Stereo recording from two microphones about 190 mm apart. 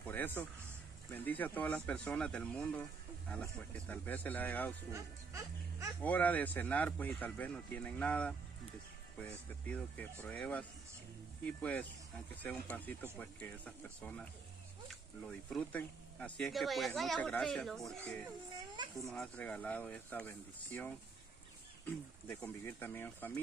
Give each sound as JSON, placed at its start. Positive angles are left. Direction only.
{"t": 0.0, "sound": "a sound", "side_deg": 10}
{"t": 1.1, "sound": "speech", "side_deg": 10}
{"t": 4.9, "sound": "speech", "side_deg": -15}
{"t": 6.0, "sound": "speech", "side_deg": 10}
{"t": 9.7, "sound": "speech", "side_deg": 5}